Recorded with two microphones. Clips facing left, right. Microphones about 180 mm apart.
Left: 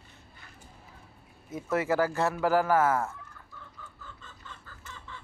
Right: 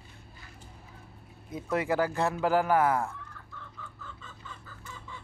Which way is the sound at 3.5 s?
Centre (ahead or behind).